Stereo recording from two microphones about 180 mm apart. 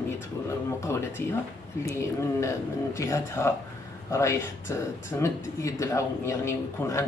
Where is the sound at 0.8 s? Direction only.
15° left (ahead or behind).